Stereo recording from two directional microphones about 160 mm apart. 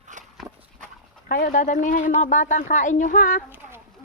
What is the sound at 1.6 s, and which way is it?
Speech, 55° left (ahead or behind).